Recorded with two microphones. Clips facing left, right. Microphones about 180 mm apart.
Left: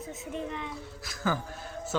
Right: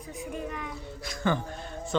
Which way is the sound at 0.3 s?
25° left (ahead or behind).